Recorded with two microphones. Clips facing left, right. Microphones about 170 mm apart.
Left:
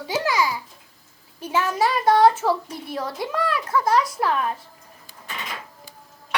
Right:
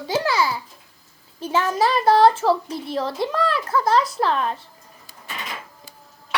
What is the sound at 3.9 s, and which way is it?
Speech, 10° left (ahead or behind).